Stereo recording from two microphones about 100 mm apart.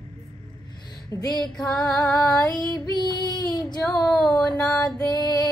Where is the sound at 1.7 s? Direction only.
5° left (ahead or behind).